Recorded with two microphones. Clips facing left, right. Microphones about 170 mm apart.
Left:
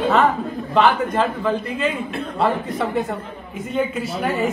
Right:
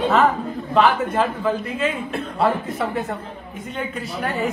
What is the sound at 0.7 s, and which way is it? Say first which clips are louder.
A woman's voice: even; centre (ahead or behind).